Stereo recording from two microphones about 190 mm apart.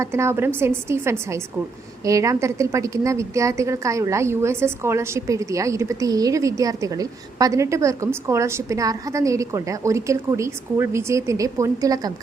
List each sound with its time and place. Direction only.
0.0 s a woman's voice: 15° right (ahead or behind)